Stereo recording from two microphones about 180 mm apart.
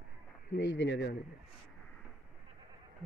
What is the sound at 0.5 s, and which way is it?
Speech, 85° left.